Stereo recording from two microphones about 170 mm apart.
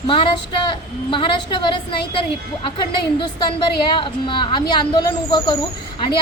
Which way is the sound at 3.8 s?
30° left (ahead or behind).